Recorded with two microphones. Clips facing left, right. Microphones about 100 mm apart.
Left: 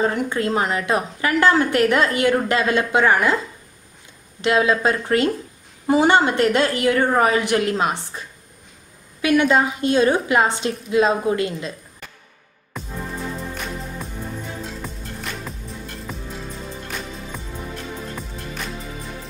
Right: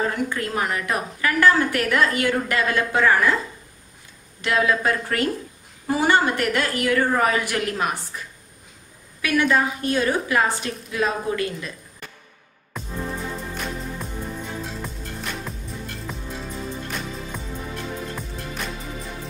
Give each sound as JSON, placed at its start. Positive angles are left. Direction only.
{"t": 0.1, "sound": "a woman's voice", "side_deg": 25}
{"t": 4.4, "sound": "a woman's voice", "side_deg": 20}
{"t": 12.7, "sound": "music", "side_deg": 0}
{"t": 14.8, "sound": "music", "side_deg": 0}
{"t": 16.1, "sound": "music", "side_deg": 0}